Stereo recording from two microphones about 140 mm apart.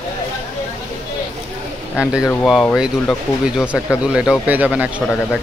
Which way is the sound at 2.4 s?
Centre (ahead or behind).